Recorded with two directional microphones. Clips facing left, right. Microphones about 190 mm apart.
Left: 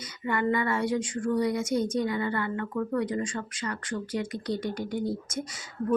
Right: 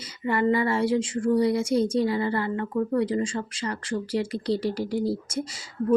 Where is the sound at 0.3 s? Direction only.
30° right (ahead or behind).